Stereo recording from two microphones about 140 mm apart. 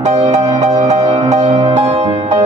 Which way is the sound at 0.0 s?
50° right (ahead or behind).